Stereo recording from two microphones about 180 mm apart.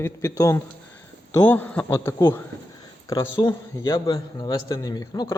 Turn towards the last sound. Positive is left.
turn(degrees=20)  # may be behind; listen again after turning